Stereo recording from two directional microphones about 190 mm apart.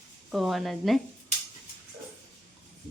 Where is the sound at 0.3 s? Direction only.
Centre (ahead or behind).